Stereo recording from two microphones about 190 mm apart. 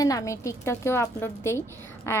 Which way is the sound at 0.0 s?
20° left (ahead or behind).